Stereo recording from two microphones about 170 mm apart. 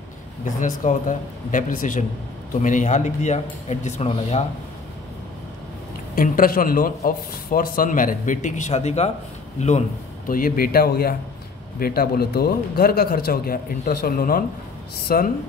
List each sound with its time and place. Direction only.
0.6 s a man's voice: 50° left (ahead or behind)
6.1 s a man's voice: 55° left (ahead or behind)